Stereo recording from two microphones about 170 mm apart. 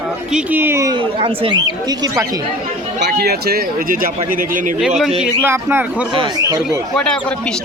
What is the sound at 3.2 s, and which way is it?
Speech, 65° right (ahead or behind).